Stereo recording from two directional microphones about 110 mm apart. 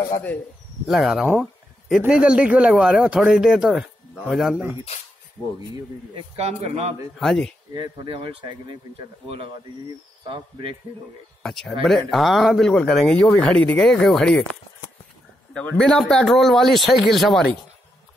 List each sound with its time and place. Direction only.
0.8 s speech: centre (ahead or behind)
6.1 s speech: 70° right (ahead or behind)
7.2 s speech: centre (ahead or behind)
7.7 s speech: 45° right (ahead or behind)
10.2 s speech: 55° right (ahead or behind)
11.4 s speech: 5° left (ahead or behind)
15.5 s speech: 10° left (ahead or behind)